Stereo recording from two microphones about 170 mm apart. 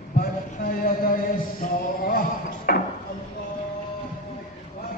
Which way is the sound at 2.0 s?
60° left (ahead or behind).